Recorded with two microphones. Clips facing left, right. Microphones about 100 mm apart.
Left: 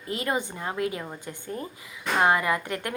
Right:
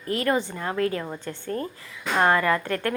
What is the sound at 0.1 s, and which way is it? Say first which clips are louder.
A woman's voice: right 4 dB; 20° left (ahead or behind).